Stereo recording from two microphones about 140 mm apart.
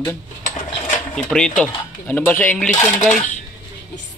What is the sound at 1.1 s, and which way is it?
Speech, 5° left (ahead or behind).